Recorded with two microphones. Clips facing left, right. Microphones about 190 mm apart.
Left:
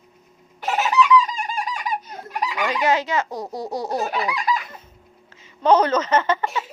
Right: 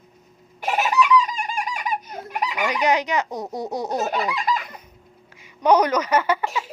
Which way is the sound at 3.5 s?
20° right (ahead or behind).